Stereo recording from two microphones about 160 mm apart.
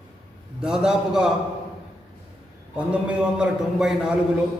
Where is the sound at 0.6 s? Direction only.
5° right (ahead or behind).